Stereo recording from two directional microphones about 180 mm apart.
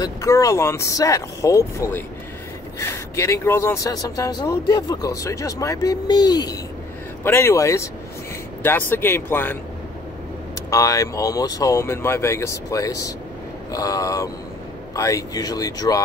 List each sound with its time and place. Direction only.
0.0 s speech: 20° left (ahead or behind)
3.2 s speech: 15° left (ahead or behind)
10.7 s speech: 20° left (ahead or behind)